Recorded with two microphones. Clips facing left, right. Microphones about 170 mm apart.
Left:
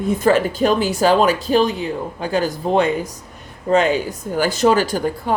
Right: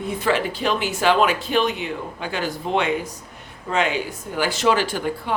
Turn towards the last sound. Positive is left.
turn(degrees=40)  # may be behind; listen again after turning